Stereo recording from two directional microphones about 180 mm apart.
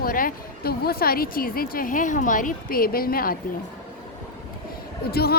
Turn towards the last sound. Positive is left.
turn(degrees=60)  # may be behind; listen again after turning